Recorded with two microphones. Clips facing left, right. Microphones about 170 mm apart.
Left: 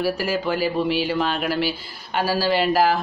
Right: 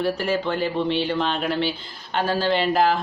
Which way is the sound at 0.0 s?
5° left (ahead or behind).